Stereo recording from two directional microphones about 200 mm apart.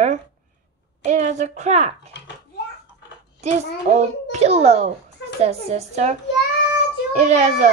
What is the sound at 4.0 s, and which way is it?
A child's voice, 30° right (ahead or behind).